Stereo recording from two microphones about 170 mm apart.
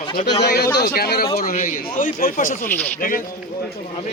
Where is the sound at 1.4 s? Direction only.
50° left (ahead or behind).